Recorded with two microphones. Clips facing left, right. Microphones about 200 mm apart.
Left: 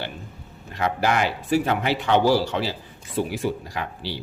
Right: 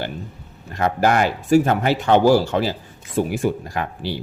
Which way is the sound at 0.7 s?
45° right (ahead or behind).